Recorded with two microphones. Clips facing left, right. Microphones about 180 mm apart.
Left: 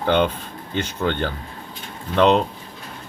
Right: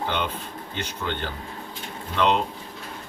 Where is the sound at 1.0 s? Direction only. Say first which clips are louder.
Left 7 dB; 55° left (ahead or behind).